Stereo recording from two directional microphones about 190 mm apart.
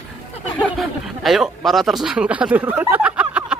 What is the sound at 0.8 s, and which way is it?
Speech, centre (ahead or behind).